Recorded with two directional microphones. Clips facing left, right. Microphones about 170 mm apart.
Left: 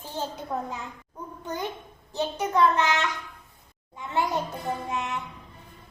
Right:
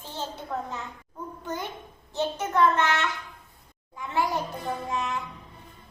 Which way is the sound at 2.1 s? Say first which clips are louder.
Left 1 dB; 15° left (ahead or behind).